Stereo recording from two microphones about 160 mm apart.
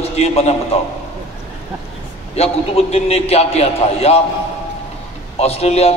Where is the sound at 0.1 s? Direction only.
40° left (ahead or behind).